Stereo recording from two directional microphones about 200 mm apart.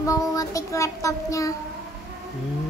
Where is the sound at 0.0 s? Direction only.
15° left (ahead or behind).